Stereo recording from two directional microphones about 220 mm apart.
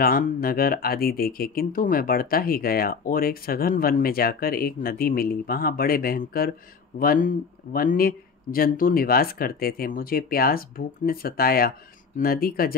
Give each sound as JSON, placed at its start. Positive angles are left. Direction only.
{"t": 0.0, "sound": "speech", "side_deg": 40}